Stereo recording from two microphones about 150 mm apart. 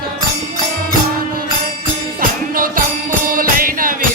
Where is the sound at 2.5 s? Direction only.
70° right (ahead or behind).